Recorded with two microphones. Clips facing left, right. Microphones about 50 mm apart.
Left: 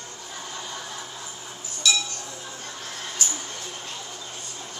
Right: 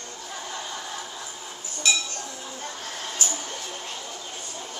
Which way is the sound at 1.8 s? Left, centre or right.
Right.